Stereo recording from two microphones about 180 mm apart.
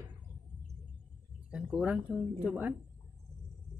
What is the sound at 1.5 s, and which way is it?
Speech, 5° right (ahead or behind).